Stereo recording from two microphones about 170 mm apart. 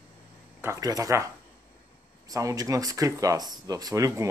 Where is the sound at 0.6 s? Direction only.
20° right (ahead or behind).